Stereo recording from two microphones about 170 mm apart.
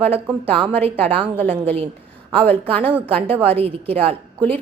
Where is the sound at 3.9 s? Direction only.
35° right (ahead or behind).